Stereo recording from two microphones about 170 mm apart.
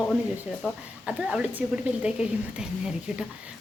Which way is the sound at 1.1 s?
5° right (ahead or behind).